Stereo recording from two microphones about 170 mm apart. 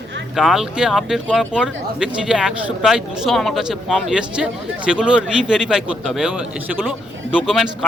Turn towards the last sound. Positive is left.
turn(degrees=0)  # may be behind; listen again after turning